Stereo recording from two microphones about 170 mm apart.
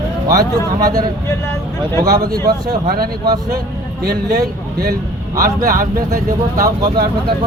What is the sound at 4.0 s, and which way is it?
Speech, 65° right (ahead or behind).